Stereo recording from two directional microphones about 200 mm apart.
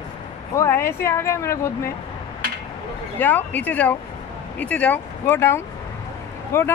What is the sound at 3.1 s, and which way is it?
Speech, 10° left (ahead or behind).